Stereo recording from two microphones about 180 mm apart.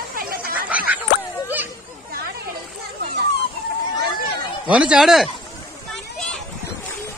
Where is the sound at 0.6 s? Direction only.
10° right (ahead or behind).